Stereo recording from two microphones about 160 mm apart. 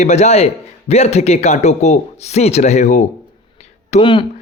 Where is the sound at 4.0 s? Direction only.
30° left (ahead or behind).